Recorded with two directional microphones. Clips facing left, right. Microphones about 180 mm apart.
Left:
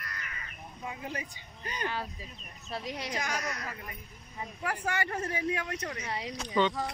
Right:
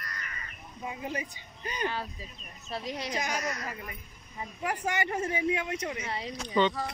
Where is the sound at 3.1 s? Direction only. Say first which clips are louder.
Right 2 dB; 20° right (ahead or behind).